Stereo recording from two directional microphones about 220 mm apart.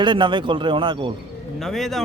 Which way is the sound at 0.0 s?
20° right (ahead or behind).